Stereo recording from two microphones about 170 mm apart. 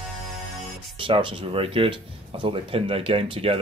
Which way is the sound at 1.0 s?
30° right (ahead or behind).